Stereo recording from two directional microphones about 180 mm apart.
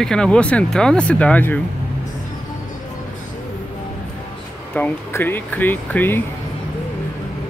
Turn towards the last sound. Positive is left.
turn(degrees=10)  # may be behind; listen again after turning